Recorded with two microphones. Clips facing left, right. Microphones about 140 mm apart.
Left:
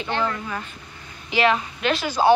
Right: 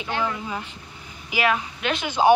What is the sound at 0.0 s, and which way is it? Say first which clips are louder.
Speech: left 2 dB; 10° right (ahead or behind).